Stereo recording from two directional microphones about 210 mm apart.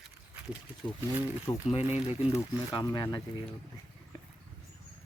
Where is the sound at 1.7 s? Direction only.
30° left (ahead or behind).